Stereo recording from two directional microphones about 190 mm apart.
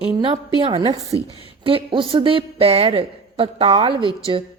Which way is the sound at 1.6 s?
25° right (ahead or behind).